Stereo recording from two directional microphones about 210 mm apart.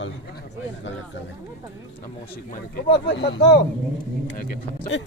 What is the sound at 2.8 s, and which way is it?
Speech, 55° left (ahead or behind).